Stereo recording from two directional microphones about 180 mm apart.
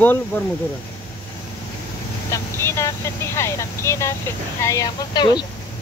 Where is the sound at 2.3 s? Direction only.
15° left (ahead or behind).